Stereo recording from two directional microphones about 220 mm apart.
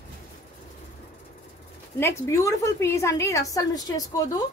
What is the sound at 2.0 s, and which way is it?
A woman's voice, 15° left (ahead or behind).